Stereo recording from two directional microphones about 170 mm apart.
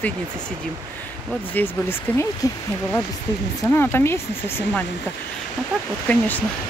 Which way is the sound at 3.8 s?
15° left (ahead or behind).